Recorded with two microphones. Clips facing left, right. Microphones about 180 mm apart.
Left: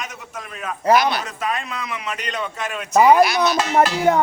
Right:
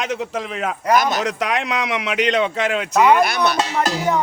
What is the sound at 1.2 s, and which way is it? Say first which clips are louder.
A man's voice: right 5 dB; 80° right.